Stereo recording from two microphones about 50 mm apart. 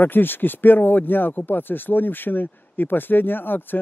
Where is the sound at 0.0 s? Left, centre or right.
Left.